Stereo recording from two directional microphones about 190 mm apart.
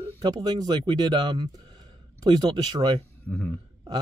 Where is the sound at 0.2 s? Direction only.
20° right (ahead or behind).